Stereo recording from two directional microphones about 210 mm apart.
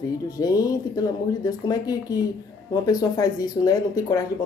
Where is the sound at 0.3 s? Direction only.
15° left (ahead or behind).